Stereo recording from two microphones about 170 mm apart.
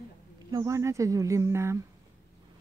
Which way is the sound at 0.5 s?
20° right (ahead or behind).